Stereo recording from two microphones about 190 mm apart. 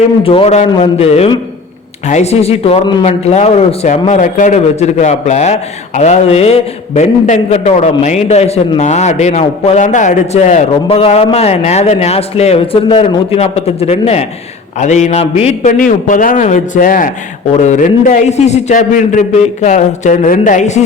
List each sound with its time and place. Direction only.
0.2 s a man's voice: 30° left (ahead or behind)